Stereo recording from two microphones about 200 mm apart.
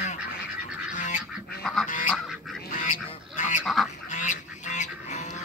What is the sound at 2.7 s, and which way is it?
Duck, 40° left (ahead or behind).